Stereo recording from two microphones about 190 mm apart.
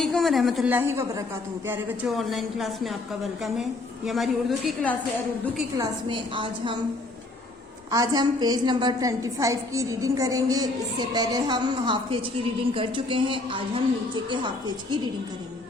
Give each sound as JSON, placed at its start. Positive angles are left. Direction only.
{"t": 0.0, "sound": "speech", "side_deg": 0}
{"t": 5.7, "sound": "a woman's voice", "side_deg": -20}
{"t": 7.9, "sound": "a woman's voice", "side_deg": -20}